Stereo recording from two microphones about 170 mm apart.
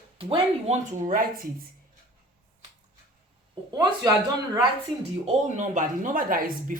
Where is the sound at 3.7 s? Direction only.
20° right (ahead or behind).